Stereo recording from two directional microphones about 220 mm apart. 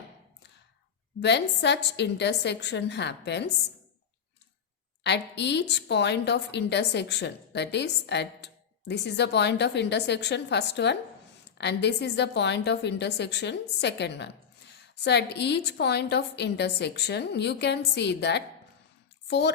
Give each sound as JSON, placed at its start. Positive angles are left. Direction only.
{"t": 1.2, "sound": "a woman's voice", "side_deg": 50}
{"t": 5.0, "sound": "a woman's voice", "side_deg": 50}